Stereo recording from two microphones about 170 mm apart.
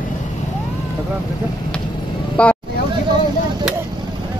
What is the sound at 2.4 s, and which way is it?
Speech, 5° left (ahead or behind).